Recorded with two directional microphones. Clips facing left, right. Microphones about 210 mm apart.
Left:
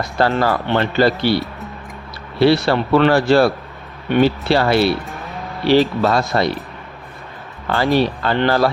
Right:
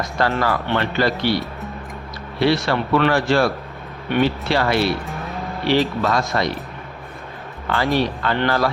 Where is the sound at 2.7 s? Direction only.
35° left (ahead or behind).